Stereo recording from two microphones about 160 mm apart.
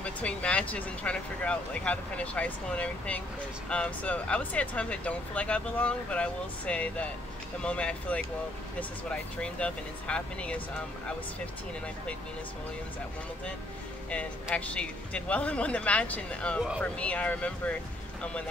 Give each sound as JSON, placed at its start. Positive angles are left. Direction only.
{"t": 0.0, "sound": "speech", "side_deg": 5}
{"t": 14.1, "sound": "speech", "side_deg": 5}